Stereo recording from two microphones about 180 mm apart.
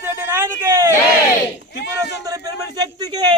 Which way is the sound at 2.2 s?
20° right (ahead or behind).